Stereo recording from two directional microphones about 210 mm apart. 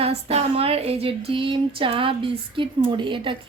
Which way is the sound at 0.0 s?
30° right (ahead or behind).